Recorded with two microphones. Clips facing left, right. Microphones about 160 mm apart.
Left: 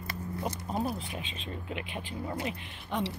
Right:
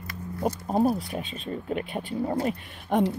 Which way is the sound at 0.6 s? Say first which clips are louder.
Right 11 dB; 40° right (ahead or behind).